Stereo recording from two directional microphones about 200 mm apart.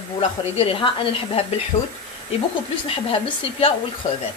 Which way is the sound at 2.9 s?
25° left (ahead or behind).